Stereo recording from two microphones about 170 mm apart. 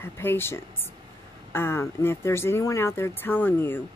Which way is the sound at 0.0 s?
15° left (ahead or behind).